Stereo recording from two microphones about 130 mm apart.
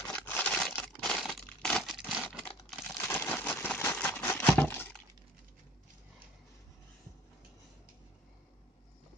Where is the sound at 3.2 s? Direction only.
15° left (ahead or behind).